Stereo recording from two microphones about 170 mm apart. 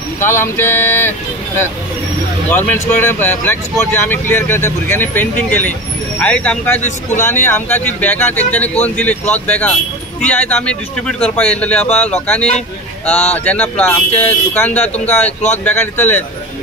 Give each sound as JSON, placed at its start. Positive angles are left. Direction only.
{"t": 0.2, "sound": "speech", "side_deg": 15}
{"t": 2.5, "sound": "speech", "side_deg": 10}
{"t": 6.8, "sound": "a man's voice", "side_deg": 45}
{"t": 7.3, "sound": "speech", "side_deg": 10}